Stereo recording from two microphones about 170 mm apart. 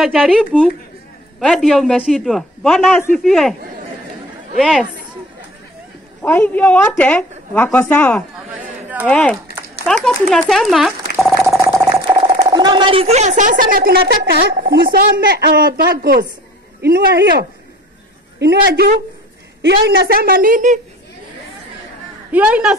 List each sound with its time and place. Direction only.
0.0 s a woman's voice: 5° right (ahead or behind)
1.4 s a man's voice: 5° left (ahead or behind)
4.6 s a man's voice: centre (ahead or behind)
6.2 s a woman's voice: 10° left (ahead or behind)
8.5 s chatter: 10° right (ahead or behind)
9.0 s a man's voice: 5° left (ahead or behind)
12.2 s speech: 30° right (ahead or behind); by 20.8 s 50° right (ahead or behind)
22.3 s a woman's voice: 5° right (ahead or behind)